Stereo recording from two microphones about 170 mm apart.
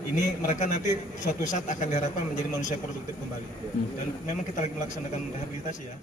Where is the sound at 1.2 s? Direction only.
50° left (ahead or behind).